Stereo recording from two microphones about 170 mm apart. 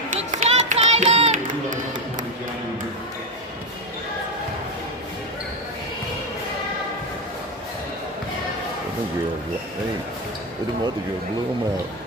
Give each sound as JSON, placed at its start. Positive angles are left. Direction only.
{"t": 0.3, "sound": "run", "side_deg": -40}